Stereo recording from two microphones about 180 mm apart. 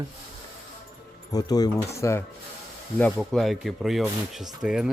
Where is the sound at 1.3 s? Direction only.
20° left (ahead or behind).